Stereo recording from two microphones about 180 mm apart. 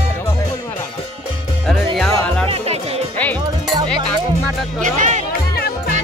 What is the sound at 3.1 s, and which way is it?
Music, 10° left (ahead or behind).